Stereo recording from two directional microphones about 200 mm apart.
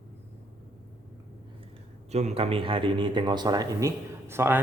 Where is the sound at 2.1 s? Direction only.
30° right (ahead or behind).